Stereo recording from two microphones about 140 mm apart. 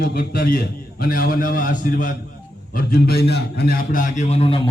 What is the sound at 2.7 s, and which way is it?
A man's voice, 90° left.